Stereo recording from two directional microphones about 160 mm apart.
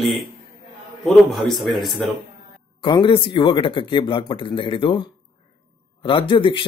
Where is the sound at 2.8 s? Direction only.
30° left (ahead or behind).